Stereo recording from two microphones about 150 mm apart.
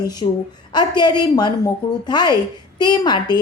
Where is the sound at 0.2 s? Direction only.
35° left (ahead or behind).